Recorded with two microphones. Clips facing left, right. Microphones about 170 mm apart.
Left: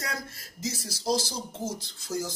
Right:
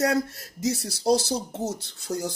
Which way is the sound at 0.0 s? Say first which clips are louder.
Right 13 dB; 70° right (ahead or behind).